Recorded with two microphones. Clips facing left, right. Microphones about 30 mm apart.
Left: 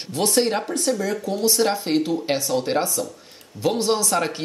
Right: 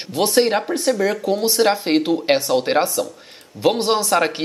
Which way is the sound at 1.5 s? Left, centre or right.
Right.